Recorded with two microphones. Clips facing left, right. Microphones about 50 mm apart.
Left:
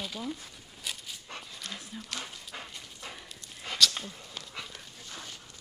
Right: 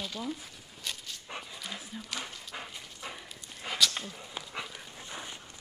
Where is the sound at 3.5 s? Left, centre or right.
Centre.